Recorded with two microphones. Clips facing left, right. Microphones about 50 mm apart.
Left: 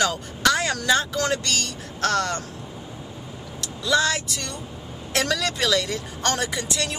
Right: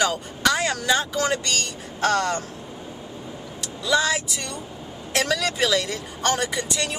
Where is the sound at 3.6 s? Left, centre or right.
Centre.